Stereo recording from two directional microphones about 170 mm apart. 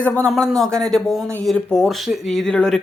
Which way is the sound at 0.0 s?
10° left (ahead or behind).